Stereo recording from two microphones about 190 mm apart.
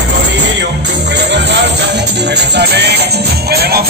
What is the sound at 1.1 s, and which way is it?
Music, 65° right (ahead or behind).